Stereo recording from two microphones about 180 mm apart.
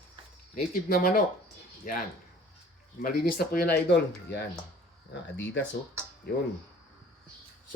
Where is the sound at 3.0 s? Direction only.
55° left (ahead or behind).